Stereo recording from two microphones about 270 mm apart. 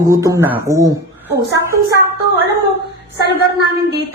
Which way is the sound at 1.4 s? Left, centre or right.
Left.